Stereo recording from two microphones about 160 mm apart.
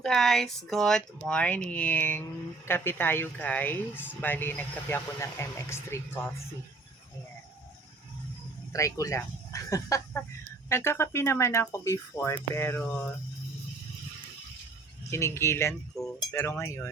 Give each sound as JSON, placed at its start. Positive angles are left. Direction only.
{"t": 0.0, "sound": "speech", "side_deg": 0}
{"t": 8.7, "sound": "speech", "side_deg": 20}
{"t": 15.1, "sound": "speech", "side_deg": 15}
{"t": 16.0, "sound": "speech", "side_deg": 0}
{"t": 16.3, "sound": "speech", "side_deg": 15}